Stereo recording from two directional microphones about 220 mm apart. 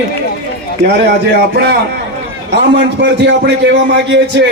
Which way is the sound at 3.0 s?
55° right (ahead or behind).